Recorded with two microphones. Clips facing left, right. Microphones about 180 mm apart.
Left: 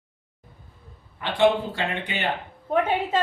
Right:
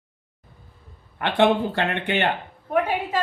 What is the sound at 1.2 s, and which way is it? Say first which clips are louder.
Speech: right 1 dB; 60° right (ahead or behind).